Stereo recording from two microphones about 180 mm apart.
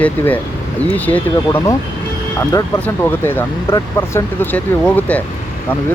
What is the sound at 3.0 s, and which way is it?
Speech, 10° left (ahead or behind).